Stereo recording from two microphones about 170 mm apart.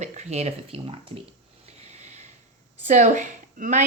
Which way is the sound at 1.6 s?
40° right (ahead or behind).